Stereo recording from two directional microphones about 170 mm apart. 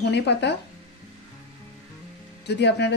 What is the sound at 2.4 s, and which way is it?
Speech, 85° left.